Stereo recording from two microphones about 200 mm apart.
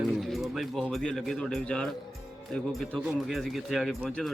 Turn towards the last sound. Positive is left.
turn(degrees=0)  # may be behind; listen again after turning